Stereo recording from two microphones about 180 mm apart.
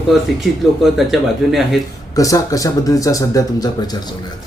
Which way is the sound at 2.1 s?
20° left (ahead or behind).